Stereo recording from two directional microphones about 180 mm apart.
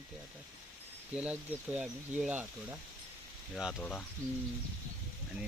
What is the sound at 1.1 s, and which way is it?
Speech, 5° right (ahead or behind).